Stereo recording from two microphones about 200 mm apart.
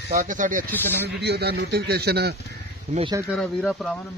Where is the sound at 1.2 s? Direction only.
55° right (ahead or behind).